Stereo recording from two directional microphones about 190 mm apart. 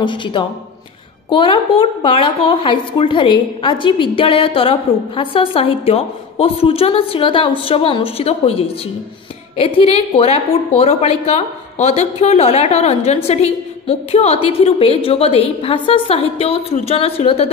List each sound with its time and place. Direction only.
0.0 s speech: 25° left (ahead or behind)
9.8 s speech: 30° left (ahead or behind)